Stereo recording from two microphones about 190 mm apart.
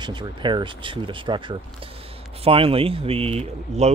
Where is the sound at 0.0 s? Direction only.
25° right (ahead or behind).